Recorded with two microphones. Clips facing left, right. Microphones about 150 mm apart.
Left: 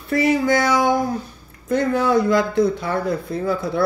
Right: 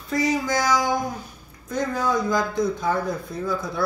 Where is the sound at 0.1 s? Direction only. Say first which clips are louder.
Left 5 dB; 60° left (ahead or behind).